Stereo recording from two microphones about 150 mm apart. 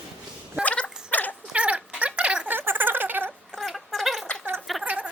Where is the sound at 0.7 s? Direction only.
10° left (ahead or behind).